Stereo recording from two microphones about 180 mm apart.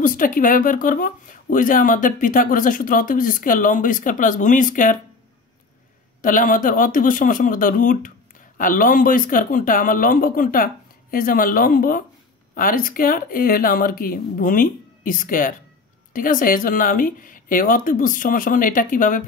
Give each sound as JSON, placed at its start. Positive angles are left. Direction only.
{"t": 0.0, "sound": "speech", "side_deg": 50}
{"t": 6.2, "sound": "speech", "side_deg": 50}